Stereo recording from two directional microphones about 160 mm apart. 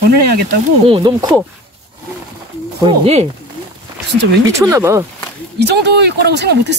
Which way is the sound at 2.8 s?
40° right (ahead or behind).